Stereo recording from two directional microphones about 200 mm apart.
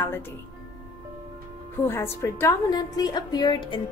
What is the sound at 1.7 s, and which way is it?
A woman's voice, 10° left (ahead or behind).